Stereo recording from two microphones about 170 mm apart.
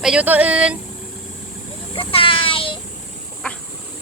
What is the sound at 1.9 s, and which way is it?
Speech, 30° left (ahead or behind).